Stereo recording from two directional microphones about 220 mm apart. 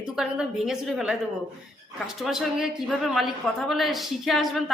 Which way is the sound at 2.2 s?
Centre (ahead or behind).